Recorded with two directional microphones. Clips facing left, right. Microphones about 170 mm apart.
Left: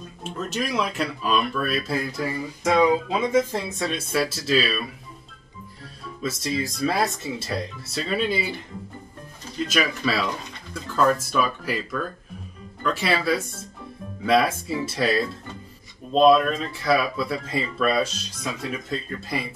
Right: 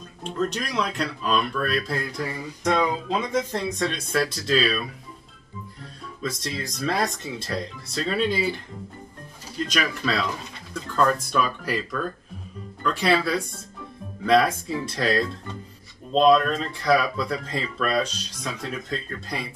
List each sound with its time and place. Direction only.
0.2 s speech: 5° left (ahead or behind)
6.2 s speech: 5° left (ahead or behind)
9.7 s speech: 5° left (ahead or behind)